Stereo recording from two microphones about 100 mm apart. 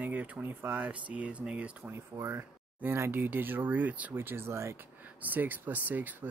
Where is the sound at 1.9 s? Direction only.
25° right (ahead or behind).